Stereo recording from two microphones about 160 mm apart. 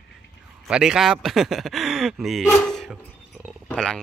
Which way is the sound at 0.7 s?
5° right (ahead or behind).